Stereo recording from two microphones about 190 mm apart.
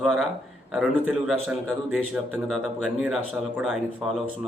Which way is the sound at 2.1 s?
Centre (ahead or behind).